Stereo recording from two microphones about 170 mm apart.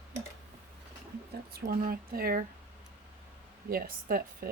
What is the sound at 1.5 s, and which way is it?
Speech, 60° right (ahead or behind).